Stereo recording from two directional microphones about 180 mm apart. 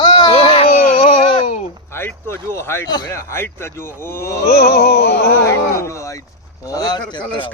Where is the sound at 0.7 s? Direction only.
55° left (ahead or behind).